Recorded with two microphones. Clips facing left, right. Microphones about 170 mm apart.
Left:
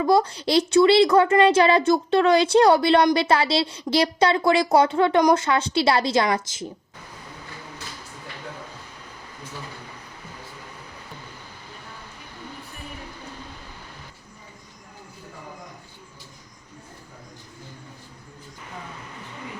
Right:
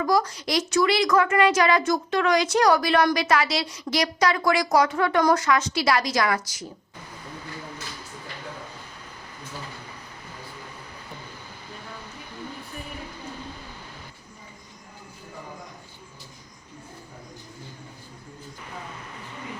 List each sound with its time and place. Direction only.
0.0 s speech: 25° left (ahead or behind)